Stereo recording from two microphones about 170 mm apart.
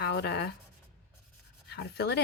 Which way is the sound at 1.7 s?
75° left (ahead or behind).